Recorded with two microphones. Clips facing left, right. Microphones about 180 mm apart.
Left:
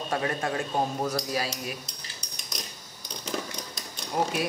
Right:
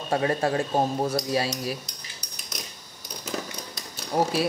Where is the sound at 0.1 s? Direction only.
30° right (ahead or behind).